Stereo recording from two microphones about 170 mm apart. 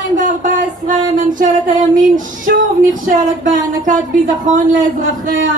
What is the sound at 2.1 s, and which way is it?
Speech, 50° right (ahead or behind).